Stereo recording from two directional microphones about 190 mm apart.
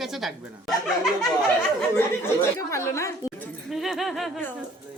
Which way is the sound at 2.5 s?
15° left (ahead or behind).